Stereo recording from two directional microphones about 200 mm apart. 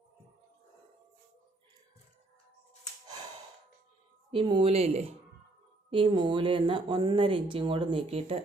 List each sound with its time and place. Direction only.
4.3 s speech: 25° right (ahead or behind)